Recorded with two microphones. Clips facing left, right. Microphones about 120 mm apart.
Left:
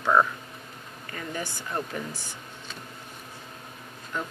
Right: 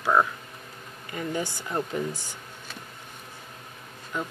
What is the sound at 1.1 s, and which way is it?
Speech, 20° right (ahead or behind).